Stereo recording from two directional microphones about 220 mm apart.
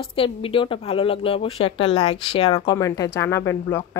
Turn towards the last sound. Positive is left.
turn(degrees=10)  # may be behind; listen again after turning